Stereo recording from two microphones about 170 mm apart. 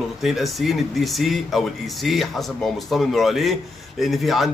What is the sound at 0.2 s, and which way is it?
Speech, centre (ahead or behind).